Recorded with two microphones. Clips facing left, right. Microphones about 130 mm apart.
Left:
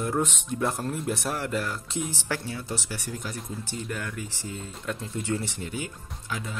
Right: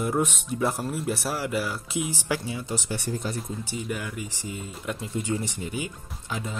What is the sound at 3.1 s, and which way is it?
Speech, 30° right (ahead or behind).